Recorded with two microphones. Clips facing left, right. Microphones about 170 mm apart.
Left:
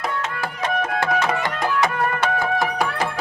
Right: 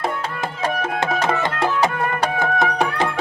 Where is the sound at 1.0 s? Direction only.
20° right (ahead or behind).